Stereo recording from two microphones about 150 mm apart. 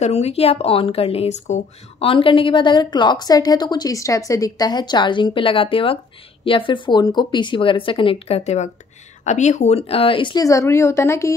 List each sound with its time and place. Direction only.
0.0 s speech: 45° left (ahead or behind); by 11.3 s 20° left (ahead or behind)